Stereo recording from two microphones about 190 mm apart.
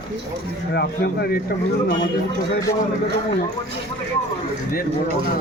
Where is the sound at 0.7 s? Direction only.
55° left (ahead or behind).